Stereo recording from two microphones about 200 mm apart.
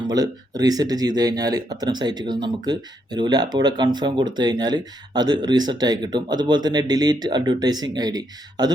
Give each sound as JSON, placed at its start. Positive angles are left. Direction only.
{"t": 0.1, "sound": "speech", "side_deg": -20}